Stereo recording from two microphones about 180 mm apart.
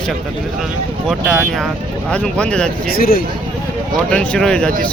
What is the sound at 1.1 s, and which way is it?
Speech, centre (ahead or behind).